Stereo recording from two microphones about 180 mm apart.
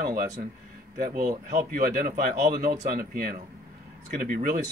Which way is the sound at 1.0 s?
50° right (ahead or behind).